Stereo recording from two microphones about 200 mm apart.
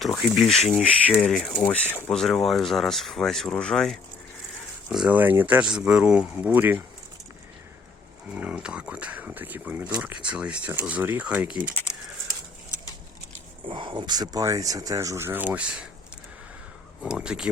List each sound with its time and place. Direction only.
0.0 s speech: centre (ahead or behind)
8.3 s speech: 5° right (ahead or behind)
13.7 s speech: 25° right (ahead or behind); by 15.9 s 5° right (ahead or behind)
17.0 s speech: 5° right (ahead or behind)